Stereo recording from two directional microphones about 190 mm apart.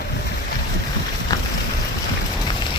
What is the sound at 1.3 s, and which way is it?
Boat, 20° left (ahead or behind).